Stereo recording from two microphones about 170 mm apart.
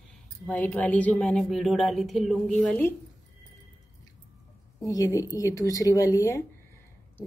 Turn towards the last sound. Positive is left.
turn(degrees=20)  # may be behind; listen again after turning